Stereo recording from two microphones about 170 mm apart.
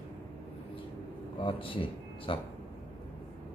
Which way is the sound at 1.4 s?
30° left (ahead or behind).